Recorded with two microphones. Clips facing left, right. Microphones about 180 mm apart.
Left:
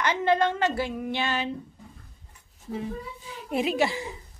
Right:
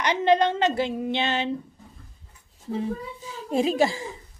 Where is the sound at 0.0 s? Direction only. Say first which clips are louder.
Right 3 dB; 20° right (ahead or behind).